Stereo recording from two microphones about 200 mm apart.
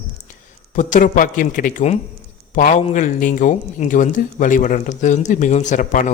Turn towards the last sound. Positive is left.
turn(degrees=40)  # may be behind; listen again after turning